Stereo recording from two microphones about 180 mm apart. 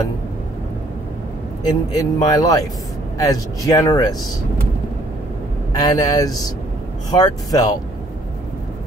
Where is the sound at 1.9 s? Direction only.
20° left (ahead or behind).